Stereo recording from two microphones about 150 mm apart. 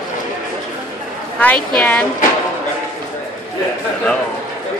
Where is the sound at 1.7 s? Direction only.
10° left (ahead or behind).